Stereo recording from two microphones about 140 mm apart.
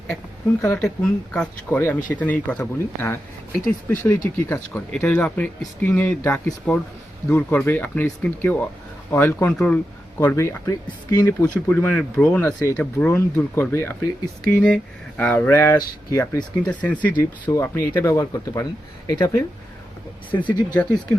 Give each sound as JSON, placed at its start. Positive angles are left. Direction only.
{"t": 0.6, "sound": "speech", "side_deg": 15}
{"t": 16.6, "sound": "speech", "side_deg": 10}
{"t": 20.3, "sound": "speech", "side_deg": 35}
{"t": 20.7, "sound": "speech", "side_deg": 5}